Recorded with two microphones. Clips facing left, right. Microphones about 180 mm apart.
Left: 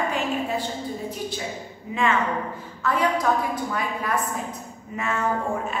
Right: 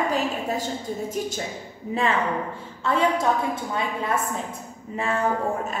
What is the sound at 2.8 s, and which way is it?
A woman's voice, 25° right (ahead or behind).